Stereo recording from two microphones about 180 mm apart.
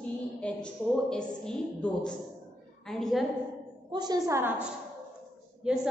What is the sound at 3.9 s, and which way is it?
Speech, 20° right (ahead or behind).